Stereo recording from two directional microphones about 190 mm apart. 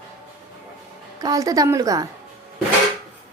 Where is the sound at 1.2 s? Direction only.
20° right (ahead or behind).